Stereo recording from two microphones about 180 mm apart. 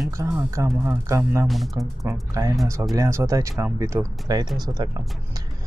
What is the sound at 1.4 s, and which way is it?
Speech, centre (ahead or behind).